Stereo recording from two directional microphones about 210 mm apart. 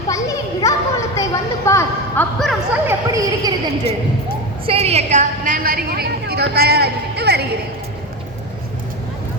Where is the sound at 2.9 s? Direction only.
15° right (ahead or behind).